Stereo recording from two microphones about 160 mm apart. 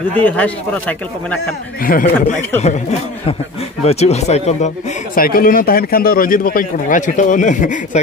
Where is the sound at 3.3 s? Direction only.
35° left (ahead or behind); by 8.0 s 50° left (ahead or behind).